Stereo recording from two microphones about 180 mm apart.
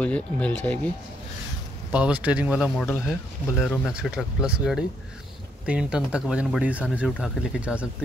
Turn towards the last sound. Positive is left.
turn(degrees=-5)  # may be behind; listen again after turning